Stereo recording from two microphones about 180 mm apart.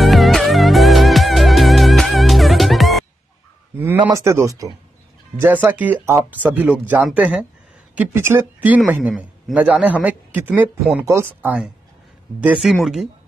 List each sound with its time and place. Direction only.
0.0 s music: centre (ahead or behind)
3.7 s a sound: 10° right (ahead or behind)
4.0 s speech: 15° right (ahead or behind)